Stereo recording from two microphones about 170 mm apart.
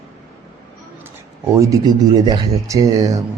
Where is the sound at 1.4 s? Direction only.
15° right (ahead or behind).